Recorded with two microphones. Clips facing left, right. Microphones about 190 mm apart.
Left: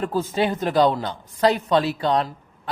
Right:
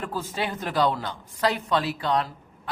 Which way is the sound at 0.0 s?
25° left (ahead or behind).